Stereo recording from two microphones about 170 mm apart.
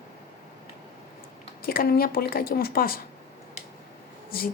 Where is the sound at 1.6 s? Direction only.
60° left (ahead or behind).